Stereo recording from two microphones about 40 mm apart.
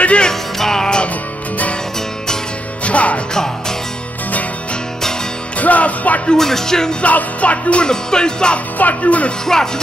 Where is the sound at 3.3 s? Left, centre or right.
Centre.